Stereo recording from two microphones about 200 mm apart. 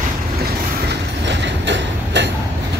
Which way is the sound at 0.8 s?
60° right (ahead or behind).